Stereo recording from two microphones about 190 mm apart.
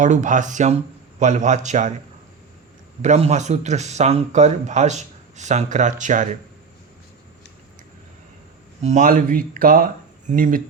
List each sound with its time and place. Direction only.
0.0 s speech: 40° right (ahead or behind)
3.0 s speech: 35° right (ahead or behind)
8.8 s speech: 40° right (ahead or behind)